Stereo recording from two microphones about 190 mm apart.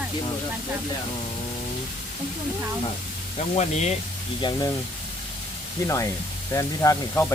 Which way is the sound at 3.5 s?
35° left (ahead or behind).